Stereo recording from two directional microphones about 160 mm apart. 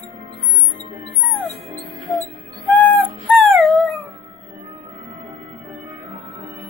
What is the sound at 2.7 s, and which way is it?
Music, 10° left (ahead or behind).